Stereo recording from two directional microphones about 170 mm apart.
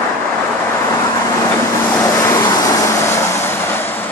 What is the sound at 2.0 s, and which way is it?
Vehicle, 20° left (ahead or behind).